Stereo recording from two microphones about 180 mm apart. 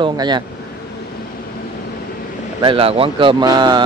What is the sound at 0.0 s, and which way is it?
Speech, 25° right (ahead or behind).